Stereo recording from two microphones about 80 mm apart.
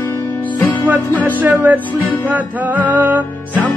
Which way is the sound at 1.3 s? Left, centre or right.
Right.